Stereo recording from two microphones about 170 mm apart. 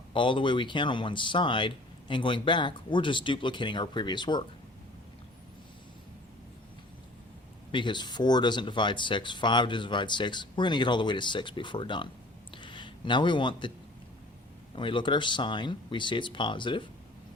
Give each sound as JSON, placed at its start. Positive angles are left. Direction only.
{"t": 0.1, "sound": "speech", "side_deg": 30}
{"t": 7.7, "sound": "speech", "side_deg": 30}
{"t": 12.5, "sound": "a sound", "side_deg": 30}
{"t": 14.8, "sound": "speech", "side_deg": 30}